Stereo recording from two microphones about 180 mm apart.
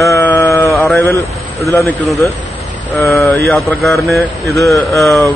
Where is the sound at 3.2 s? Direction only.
10° left (ahead or behind).